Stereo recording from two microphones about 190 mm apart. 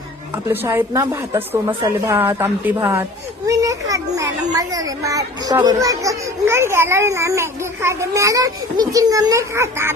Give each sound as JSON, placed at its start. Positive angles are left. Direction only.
{"t": 0.5, "sound": "a woman's voice", "side_deg": -10}